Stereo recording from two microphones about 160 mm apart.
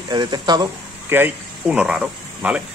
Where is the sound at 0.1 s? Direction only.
25° right (ahead or behind).